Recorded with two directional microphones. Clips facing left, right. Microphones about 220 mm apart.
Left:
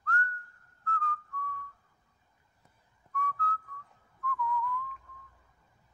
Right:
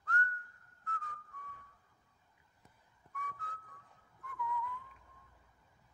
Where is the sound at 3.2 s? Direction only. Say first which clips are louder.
Left 12 dB; 15° right (ahead or behind).